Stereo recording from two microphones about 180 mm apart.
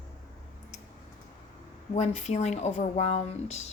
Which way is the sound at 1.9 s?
40° left (ahead or behind).